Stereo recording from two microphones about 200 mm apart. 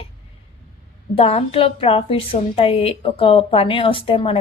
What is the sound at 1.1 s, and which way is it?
A woman's voice, 30° left (ahead or behind).